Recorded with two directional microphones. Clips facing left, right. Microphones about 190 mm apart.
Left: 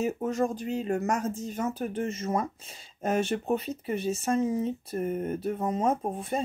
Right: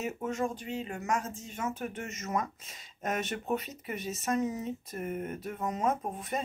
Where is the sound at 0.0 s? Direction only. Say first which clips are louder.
Left 5 dB; 40° left (ahead or behind).